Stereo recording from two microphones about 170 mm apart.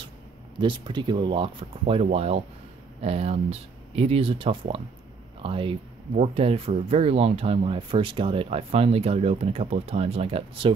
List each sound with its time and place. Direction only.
0.6 s speech: 30° right (ahead or behind)